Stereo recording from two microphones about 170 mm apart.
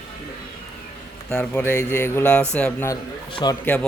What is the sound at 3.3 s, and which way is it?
Speech, 30° left (ahead or behind).